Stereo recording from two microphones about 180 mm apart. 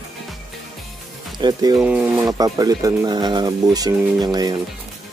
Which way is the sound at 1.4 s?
20° right (ahead or behind).